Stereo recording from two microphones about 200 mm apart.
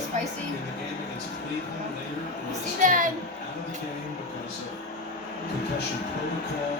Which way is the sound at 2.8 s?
40° right (ahead or behind).